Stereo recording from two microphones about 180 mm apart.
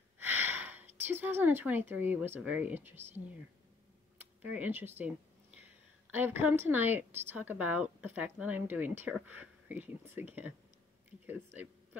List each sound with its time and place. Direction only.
0.2 s speech: 10° right (ahead or behind)
4.2 s a sound: 10° right (ahead or behind)
6.1 s speech: 10° right (ahead or behind)